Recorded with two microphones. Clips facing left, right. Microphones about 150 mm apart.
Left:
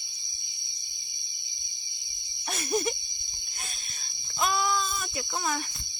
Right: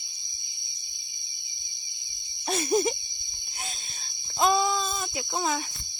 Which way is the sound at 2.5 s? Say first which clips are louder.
Right 5 dB; 30° right (ahead or behind).